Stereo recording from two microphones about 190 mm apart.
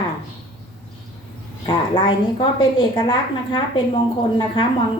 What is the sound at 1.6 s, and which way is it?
A woman's voice, 25° left (ahead or behind).